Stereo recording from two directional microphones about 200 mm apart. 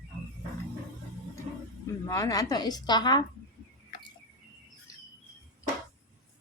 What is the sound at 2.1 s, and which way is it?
A woman's voice, 15° left (ahead or behind).